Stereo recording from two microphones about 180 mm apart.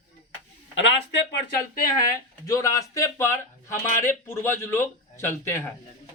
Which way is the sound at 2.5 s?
15° left (ahead or behind).